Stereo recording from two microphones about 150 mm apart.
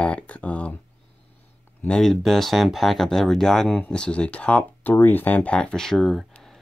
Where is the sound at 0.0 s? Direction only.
10° left (ahead or behind).